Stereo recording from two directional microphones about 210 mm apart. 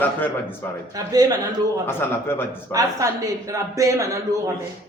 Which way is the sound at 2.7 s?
15° right (ahead or behind).